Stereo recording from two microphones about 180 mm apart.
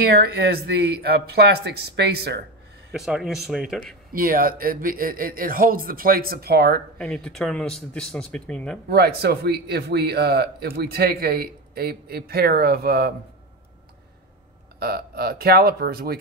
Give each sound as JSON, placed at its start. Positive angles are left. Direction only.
{"t": 0.1, "sound": "speech", "side_deg": -65}
{"t": 2.9, "sound": "speech", "side_deg": 0}
{"t": 4.1, "sound": "speech", "side_deg": -55}
{"t": 7.0, "sound": "speech", "side_deg": 5}
{"t": 8.8, "sound": "speech", "side_deg": -60}
{"t": 14.8, "sound": "speech", "side_deg": -60}